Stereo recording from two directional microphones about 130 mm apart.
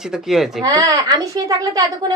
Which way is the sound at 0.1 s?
5° right (ahead or behind).